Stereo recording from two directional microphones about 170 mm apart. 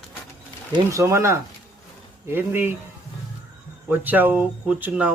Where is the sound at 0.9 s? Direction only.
15° right (ahead or behind).